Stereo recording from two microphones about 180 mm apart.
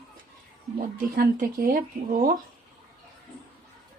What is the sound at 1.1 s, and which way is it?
Speech, 50° right (ahead or behind).